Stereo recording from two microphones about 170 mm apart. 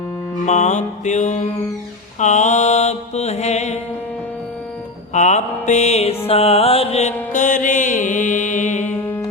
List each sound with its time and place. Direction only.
0.4 s mantra: 45° left (ahead or behind)
5.1 s music: 45° left (ahead or behind)